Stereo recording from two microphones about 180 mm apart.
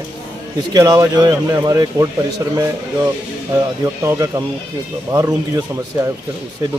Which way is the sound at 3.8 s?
20° right (ahead or behind).